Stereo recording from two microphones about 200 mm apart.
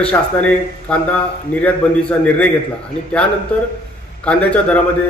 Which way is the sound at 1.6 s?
5° left (ahead or behind).